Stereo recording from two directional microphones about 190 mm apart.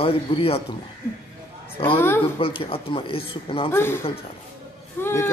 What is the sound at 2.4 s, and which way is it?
Speech, 30° left (ahead or behind).